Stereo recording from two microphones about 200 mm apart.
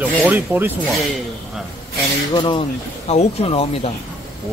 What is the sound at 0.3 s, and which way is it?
Speech, 10° right (ahead or behind).